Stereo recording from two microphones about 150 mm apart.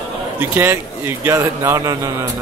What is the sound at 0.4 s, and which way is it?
A man's voice, 15° right (ahead or behind).